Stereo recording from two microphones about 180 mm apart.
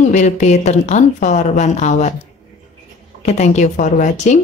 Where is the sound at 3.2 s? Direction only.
40° left (ahead or behind).